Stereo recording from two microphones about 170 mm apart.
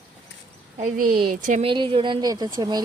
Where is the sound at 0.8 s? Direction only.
55° right (ahead or behind).